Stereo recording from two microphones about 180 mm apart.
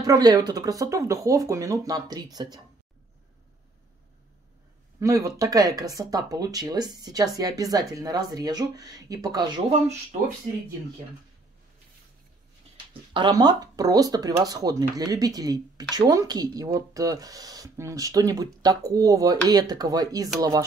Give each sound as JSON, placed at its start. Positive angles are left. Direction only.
{"t": 0.0, "sound": "speech", "side_deg": -20}
{"t": 5.0, "sound": "speech", "side_deg": -20}
{"t": 13.1, "sound": "speech", "side_deg": -25}